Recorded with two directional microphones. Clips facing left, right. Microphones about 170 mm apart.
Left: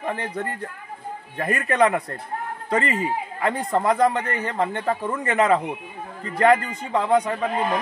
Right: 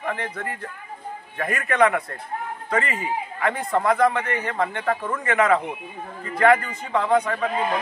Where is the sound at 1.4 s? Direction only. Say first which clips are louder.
Even; 35° left (ahead or behind).